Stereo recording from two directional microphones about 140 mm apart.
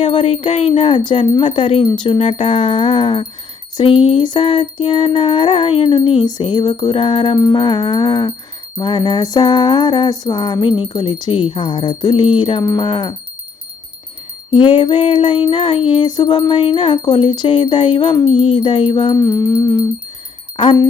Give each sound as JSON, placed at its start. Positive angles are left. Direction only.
{"t": 0.0, "sound": "music", "side_deg": 40}
{"t": 14.5, "sound": "music", "side_deg": 35}